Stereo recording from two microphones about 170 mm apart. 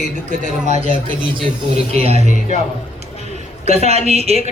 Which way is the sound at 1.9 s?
35° right (ahead or behind).